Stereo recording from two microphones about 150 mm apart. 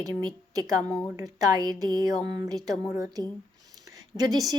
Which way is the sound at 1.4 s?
25° right (ahead or behind).